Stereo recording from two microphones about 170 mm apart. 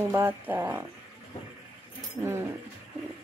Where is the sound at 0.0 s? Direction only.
15° right (ahead or behind).